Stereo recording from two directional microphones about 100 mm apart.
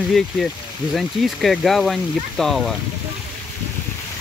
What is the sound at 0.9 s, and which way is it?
Speech, centre (ahead or behind).